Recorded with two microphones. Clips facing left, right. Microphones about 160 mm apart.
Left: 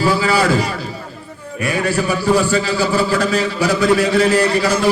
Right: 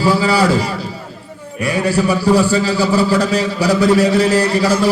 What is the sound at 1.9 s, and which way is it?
A man's voice, 35° right (ahead or behind).